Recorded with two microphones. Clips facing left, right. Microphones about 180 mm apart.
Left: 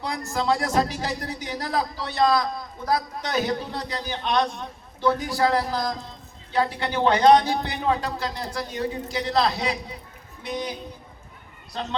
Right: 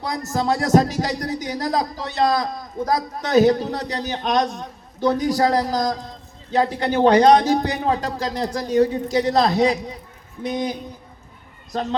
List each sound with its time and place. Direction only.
0.0 s speech: 40° right (ahead or behind)
11.7 s speech: 40° right (ahead or behind)